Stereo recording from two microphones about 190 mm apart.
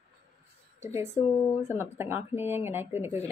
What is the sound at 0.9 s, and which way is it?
Speech, 15° right (ahead or behind).